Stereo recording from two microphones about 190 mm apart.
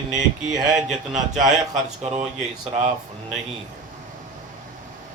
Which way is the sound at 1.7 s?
40° right (ahead or behind).